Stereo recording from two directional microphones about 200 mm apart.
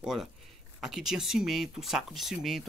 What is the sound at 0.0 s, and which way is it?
Speech, centre (ahead or behind).